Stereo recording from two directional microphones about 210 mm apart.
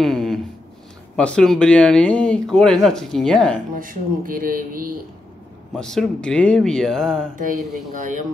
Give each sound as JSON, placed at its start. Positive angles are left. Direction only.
{"t": 0.0, "sound": "a sound", "side_deg": 0}
{"t": 1.1, "sound": "speech", "side_deg": 5}
{"t": 3.7, "sound": "speech", "side_deg": -40}
{"t": 5.7, "sound": "speech", "side_deg": 0}
{"t": 7.3, "sound": "speech", "side_deg": -40}